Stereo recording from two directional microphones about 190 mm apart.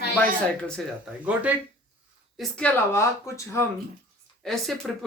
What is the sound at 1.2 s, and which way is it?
Speech, 10° right (ahead or behind).